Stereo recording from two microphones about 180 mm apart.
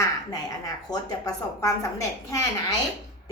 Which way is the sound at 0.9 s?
20° left (ahead or behind).